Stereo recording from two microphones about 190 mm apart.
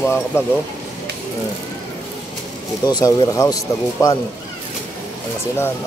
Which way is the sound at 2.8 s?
20° left (ahead or behind).